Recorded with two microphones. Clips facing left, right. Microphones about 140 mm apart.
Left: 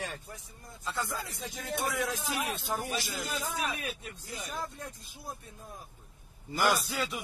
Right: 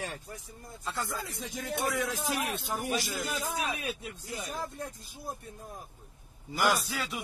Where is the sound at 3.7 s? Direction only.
15° right (ahead or behind).